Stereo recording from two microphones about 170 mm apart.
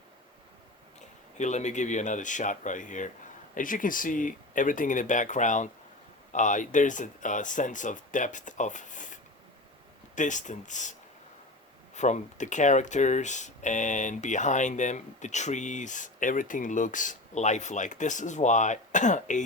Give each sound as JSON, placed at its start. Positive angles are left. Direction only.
{"t": 1.4, "sound": "speech", "side_deg": 45}
{"t": 10.2, "sound": "speech", "side_deg": 45}
{"t": 11.9, "sound": "speech", "side_deg": 45}